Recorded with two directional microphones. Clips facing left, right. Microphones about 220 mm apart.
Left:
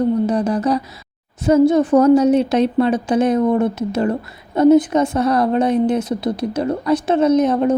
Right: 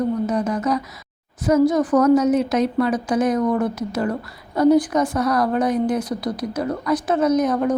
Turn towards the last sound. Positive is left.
turn(degrees=25)  # may be behind; listen again after turning